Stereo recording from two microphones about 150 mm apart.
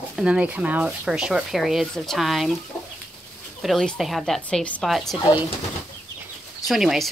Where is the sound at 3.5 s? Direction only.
Centre (ahead or behind).